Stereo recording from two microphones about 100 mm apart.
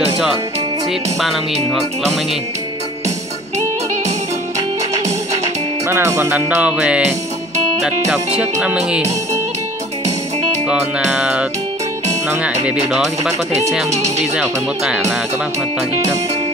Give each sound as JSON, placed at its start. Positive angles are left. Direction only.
{"t": 5.9, "sound": "speech", "side_deg": -25}
{"t": 8.4, "sound": "music", "side_deg": -10}
{"t": 10.7, "sound": "music", "side_deg": -5}
{"t": 13.9, "sound": "speech", "side_deg": -90}